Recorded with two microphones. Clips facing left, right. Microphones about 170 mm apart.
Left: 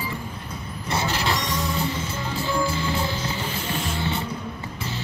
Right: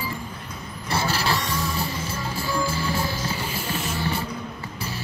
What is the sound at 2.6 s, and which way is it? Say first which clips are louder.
Music: left 1 dB; 20° left (ahead or behind).